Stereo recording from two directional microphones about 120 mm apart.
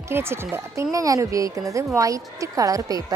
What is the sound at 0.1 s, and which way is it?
A woman's voice, 20° right (ahead or behind).